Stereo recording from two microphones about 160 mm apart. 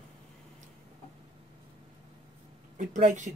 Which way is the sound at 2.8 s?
50° right (ahead or behind).